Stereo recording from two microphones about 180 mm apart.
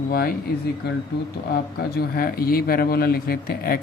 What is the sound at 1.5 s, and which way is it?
Speech, 60° left (ahead or behind).